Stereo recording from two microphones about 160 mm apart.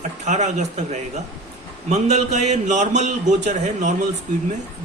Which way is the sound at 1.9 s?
45° right (ahead or behind).